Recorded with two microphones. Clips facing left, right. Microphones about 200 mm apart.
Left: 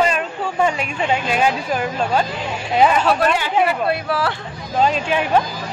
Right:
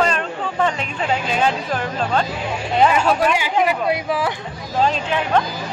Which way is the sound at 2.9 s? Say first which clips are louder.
Even; 10° right (ahead or behind).